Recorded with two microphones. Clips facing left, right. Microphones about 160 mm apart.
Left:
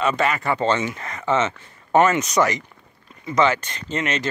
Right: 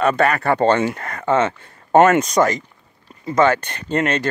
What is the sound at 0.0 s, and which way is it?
Speech, 60° right (ahead or behind).